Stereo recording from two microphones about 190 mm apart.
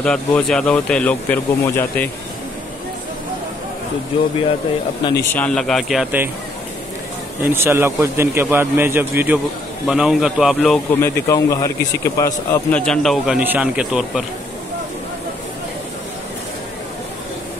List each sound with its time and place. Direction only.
0.0 s speech: 5° left (ahead or behind)
5.3 s speech: 5° left (ahead or behind)
7.4 s a man's voice: 10° right (ahead or behind)
10.9 s speech: 10° left (ahead or behind)
12.8 s speech: centre (ahead or behind)